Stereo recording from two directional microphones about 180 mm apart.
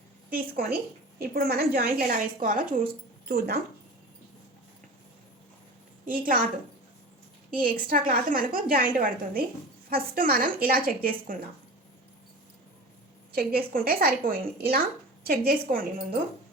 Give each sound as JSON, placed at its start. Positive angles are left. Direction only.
{"t": 0.3, "sound": "a woman's voice", "side_deg": -55}
{"t": 3.2, "sound": "a woman's voice", "side_deg": -60}
{"t": 6.1, "sound": "a woman's voice", "side_deg": -50}
{"t": 7.5, "sound": "a woman's voice", "side_deg": -50}
{"t": 13.3, "sound": "a woman's voice", "side_deg": -55}